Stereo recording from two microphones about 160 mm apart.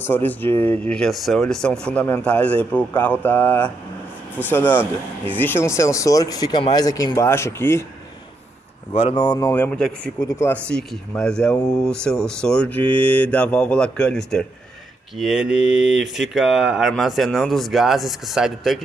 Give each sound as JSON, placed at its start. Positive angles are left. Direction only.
{"t": 0.0, "sound": "speech", "side_deg": 10}
{"t": 8.9, "sound": "speech", "side_deg": 30}